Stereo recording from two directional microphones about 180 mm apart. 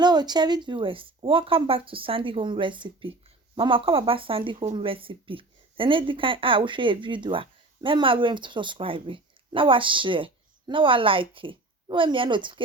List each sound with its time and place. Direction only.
0.0 s speech: 25° right (ahead or behind)